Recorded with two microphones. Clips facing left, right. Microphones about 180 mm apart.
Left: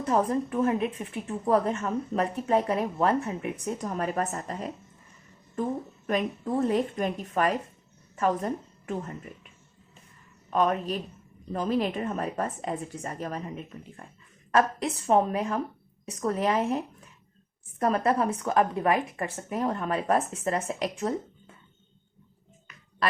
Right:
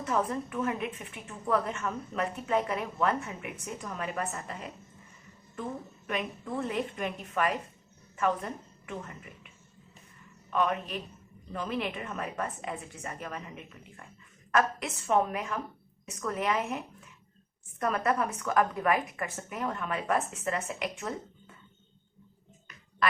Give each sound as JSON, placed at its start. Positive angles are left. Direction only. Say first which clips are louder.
{"t": 0.0, "sound": "a woman's voice", "louder": "left 5 dB", "side_deg": 35}
{"t": 6.1, "sound": "a woman's voice", "louder": "left 6 dB", "side_deg": 40}
{"t": 10.5, "sound": "a woman's voice", "louder": "left 4 dB", "side_deg": 40}